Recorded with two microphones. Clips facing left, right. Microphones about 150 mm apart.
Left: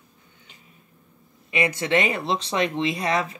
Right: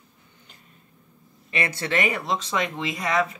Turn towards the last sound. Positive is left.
turn(degrees=30)  # may be behind; listen again after turning